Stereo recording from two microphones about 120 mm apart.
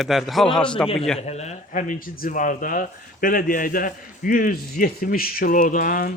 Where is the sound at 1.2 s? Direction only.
65° left (ahead or behind); by 2.6 s 90° left.